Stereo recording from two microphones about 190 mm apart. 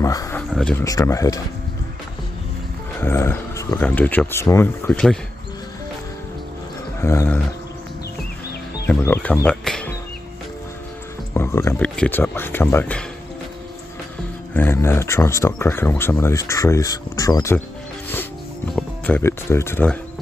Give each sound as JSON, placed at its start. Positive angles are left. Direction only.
{"t": 0.0, "sound": "speech", "side_deg": 15}
{"t": 0.6, "sound": "speech", "side_deg": 5}
{"t": 0.8, "sound": "speech", "side_deg": 15}
{"t": 3.0, "sound": "speech", "side_deg": 15}
{"t": 7.0, "sound": "speech", "side_deg": 15}
{"t": 8.8, "sound": "speech", "side_deg": 10}
{"t": 11.3, "sound": "speech", "side_deg": 15}
{"t": 14.5, "sound": "speech", "side_deg": 10}
{"t": 18.8, "sound": "speech", "side_deg": 10}